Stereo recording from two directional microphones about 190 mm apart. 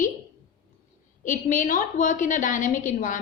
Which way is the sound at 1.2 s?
45° left (ahead or behind).